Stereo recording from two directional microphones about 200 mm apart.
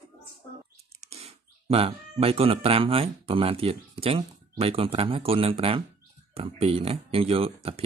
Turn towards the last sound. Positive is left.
turn(degrees=-30)  # may be behind; listen again after turning